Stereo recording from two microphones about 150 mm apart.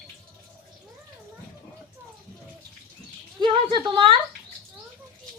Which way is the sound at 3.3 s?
35° right (ahead or behind).